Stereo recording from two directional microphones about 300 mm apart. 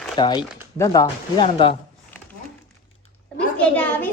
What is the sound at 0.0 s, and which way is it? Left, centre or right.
Speech, centre.